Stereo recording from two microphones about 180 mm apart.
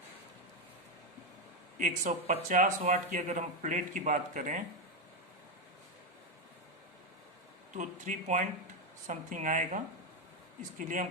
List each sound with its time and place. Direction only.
1.8 s speech: 45° right (ahead or behind)
7.7 s speech: 45° right (ahead or behind)